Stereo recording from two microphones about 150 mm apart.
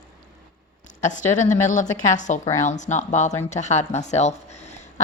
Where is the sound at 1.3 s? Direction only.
55° left (ahead or behind).